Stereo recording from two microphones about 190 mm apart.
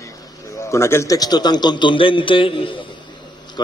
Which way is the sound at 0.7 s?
15° left (ahead or behind).